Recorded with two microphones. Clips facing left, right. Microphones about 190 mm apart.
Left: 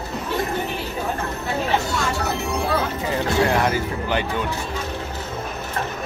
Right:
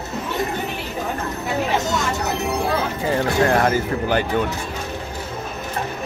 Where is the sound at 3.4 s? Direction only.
45° right (ahead or behind).